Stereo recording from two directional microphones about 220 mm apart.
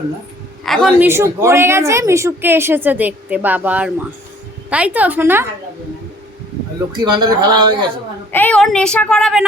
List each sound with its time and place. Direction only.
0.6 s a woman's voice: centre (ahead or behind)
7.0 s speech: 20° right (ahead or behind)
8.3 s speech: 10° left (ahead or behind)